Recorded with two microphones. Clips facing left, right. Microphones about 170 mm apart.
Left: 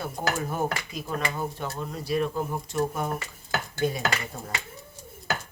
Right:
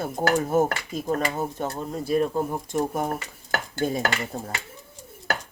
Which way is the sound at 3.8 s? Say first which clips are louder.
Right 1 dB; 35° right (ahead or behind).